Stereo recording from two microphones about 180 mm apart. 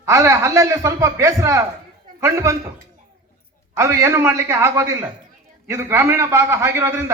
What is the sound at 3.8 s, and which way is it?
A man's voice, 15° right (ahead or behind).